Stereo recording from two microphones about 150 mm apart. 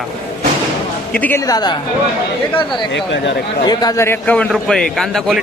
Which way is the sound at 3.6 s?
25° left (ahead or behind).